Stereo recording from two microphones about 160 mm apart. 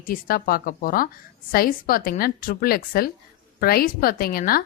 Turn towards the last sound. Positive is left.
turn(degrees=65)  # may be behind; listen again after turning